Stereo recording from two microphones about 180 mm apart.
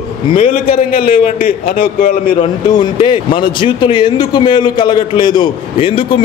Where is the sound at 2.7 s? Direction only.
25° left (ahead or behind).